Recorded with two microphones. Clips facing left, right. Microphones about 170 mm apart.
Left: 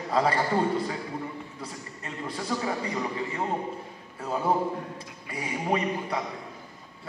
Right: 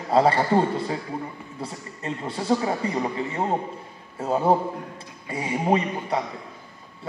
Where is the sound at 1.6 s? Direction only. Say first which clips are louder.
Right 5 dB; 30° right (ahead or behind).